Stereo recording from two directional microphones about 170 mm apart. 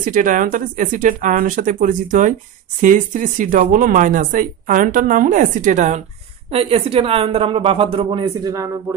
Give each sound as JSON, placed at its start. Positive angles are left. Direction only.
{"t": 0.0, "sound": "a woman's voice", "side_deg": -50}
{"t": 6.5, "sound": "a woman's voice", "side_deg": -35}